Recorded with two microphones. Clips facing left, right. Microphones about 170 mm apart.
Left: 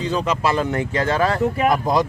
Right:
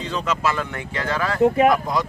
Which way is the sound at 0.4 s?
35° left (ahead or behind).